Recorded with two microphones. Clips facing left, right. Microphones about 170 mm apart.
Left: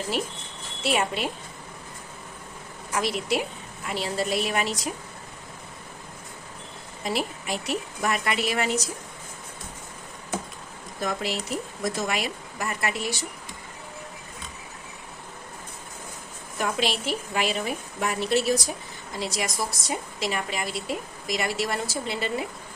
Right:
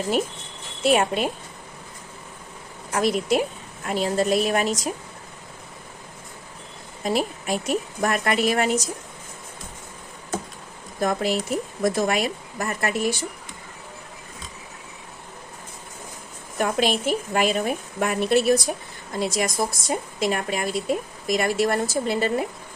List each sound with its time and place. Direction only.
0.8 s a woman's voice: 45° right (ahead or behind)
2.9 s a woman's voice: 45° right (ahead or behind)
7.0 s a woman's voice: 45° right (ahead or behind)
11.0 s a woman's voice: 50° right (ahead or behind)
16.6 s a woman's voice: 50° right (ahead or behind)